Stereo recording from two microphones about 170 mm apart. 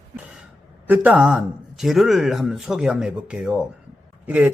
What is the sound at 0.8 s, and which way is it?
Speech, 10° right (ahead or behind).